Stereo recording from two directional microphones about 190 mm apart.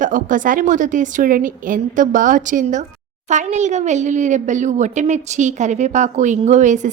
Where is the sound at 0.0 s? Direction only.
45° right (ahead or behind).